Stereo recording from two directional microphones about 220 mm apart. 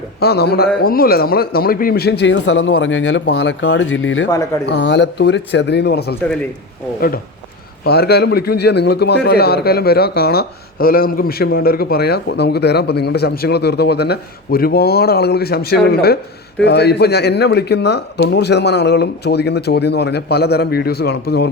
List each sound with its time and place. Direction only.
0.2 s a man's voice: 45° left (ahead or behind)
7.9 s a man's voice: 45° left (ahead or behind)